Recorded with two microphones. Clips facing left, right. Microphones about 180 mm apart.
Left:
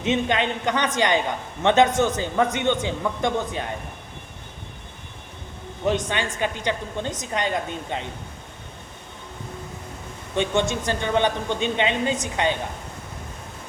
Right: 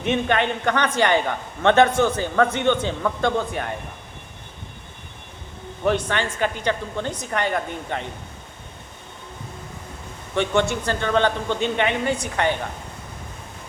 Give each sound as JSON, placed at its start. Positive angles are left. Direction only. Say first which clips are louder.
{"t": 0.0, "sound": "a man's voice", "louder": "right 1 dB", "side_deg": 20}
{"t": 5.9, "sound": "a man's voice", "louder": "right 2 dB", "side_deg": 15}
{"t": 10.3, "sound": "a man's voice", "louder": "right 2 dB", "side_deg": 15}